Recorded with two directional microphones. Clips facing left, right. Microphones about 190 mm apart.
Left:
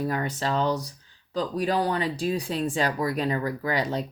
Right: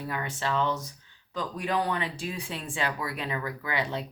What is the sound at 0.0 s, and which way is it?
Speech, 40° left (ahead or behind).